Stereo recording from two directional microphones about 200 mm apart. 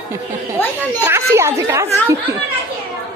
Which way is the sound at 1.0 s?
10° right (ahead or behind).